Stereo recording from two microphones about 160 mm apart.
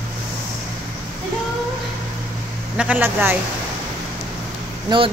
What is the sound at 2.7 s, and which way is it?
Speech, 10° right (ahead or behind).